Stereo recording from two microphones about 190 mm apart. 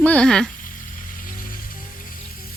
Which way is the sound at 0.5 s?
45° left (ahead or behind).